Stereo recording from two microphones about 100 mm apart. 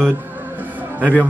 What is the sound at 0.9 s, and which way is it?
Speech, 15° right (ahead or behind).